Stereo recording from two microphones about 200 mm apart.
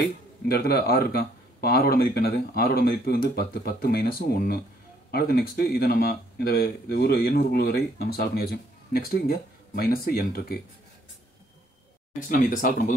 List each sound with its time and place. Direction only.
0.5 s speech: 50° left (ahead or behind)
12.3 s speech: 40° left (ahead or behind)